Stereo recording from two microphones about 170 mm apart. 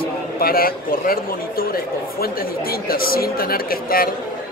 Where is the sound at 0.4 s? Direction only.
60° left (ahead or behind).